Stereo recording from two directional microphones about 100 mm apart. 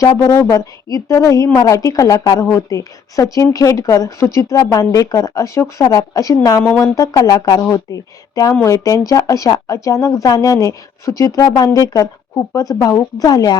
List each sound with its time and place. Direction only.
0.0 s speech: 35° left (ahead or behind)
6.6 s speech: 20° left (ahead or behind)
6.9 s speech: 35° left (ahead or behind)